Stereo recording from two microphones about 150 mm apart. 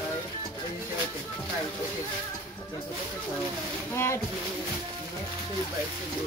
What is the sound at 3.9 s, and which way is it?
Speech, 15° left (ahead or behind).